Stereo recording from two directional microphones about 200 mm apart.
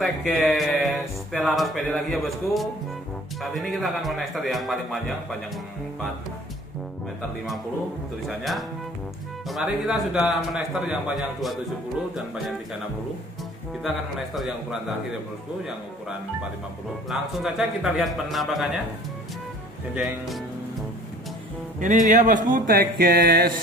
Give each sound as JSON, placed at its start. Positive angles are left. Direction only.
{"t": 0.0, "sound": "a man's voice", "side_deg": 0}
{"t": 8.3, "sound": "a man's voice", "side_deg": 0}
{"t": 13.8, "sound": "a man's voice", "side_deg": 0}
{"t": 17.1, "sound": "a man's voice", "side_deg": 0}
{"t": 21.7, "sound": "speech", "side_deg": -40}